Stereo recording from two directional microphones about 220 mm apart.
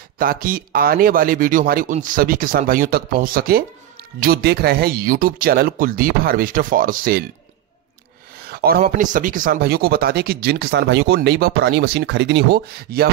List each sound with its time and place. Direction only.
0.2 s speech: 40° right (ahead or behind)
8.5 s speech: 45° right (ahead or behind)